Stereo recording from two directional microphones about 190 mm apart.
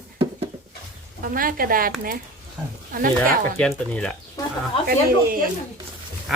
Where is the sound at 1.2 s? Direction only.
50° right (ahead or behind).